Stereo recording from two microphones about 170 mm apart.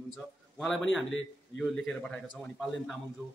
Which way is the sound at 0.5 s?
5° left (ahead or behind).